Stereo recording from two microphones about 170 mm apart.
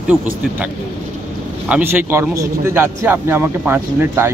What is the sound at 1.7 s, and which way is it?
A man's voice, 10° right (ahead or behind).